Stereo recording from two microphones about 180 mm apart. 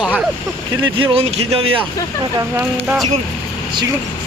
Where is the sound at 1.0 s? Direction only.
35° right (ahead or behind).